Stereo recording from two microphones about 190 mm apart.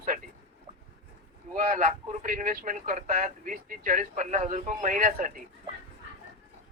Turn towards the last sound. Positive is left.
turn(degrees=-45)  # may be behind; listen again after turning